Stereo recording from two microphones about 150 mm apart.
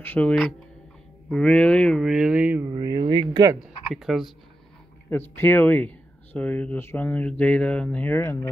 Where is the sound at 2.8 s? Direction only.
30° right (ahead or behind).